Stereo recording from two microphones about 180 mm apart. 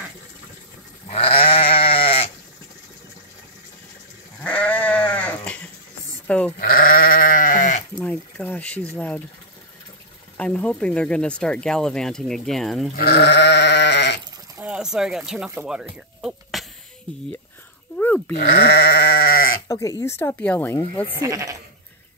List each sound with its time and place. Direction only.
1.0 s goat: 30° left (ahead or behind)
4.4 s goat: 5° left (ahead or behind)
6.2 s sheep: 5° left (ahead or behind)
6.6 s goat: 50° left (ahead or behind)
8.0 s a sound: 10° left (ahead or behind)
8.9 s speech: 10° left (ahead or behind)
10.3 s speech: 5° left (ahead or behind)
12.9 s sheep: 65° left (ahead or behind)
14.6 s speech: 5° right (ahead or behind)
16.2 s throat clearing: centre (ahead or behind)
17.9 s dog: 10° left (ahead or behind)
18.3 s sheep: 70° left (ahead or behind)
19.7 s speech: 20° left (ahead or behind)
21.1 s speech: 20° right (ahead or behind)